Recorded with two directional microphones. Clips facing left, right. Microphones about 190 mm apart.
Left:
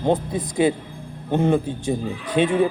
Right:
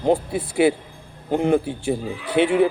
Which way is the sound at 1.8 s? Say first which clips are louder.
Even; 15° left (ahead or behind).